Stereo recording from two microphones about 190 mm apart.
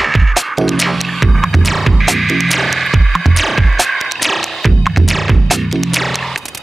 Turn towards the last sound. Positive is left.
turn(degrees=0)  # may be behind; listen again after turning